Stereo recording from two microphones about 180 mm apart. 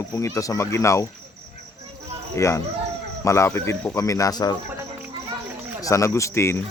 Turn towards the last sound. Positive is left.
turn(degrees=15)  # may be behind; listen again after turning